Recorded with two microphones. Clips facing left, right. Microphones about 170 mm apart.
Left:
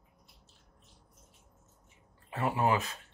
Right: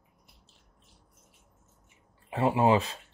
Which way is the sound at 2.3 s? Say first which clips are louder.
Right 6 dB; 25° right (ahead or behind).